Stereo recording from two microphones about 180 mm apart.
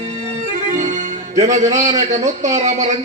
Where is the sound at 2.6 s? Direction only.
40° right (ahead or behind).